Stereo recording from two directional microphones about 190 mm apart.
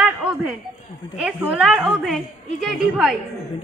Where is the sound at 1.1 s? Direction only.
5° right (ahead or behind).